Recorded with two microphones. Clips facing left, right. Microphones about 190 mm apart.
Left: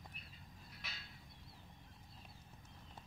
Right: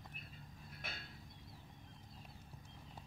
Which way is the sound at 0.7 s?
50° right (ahead or behind).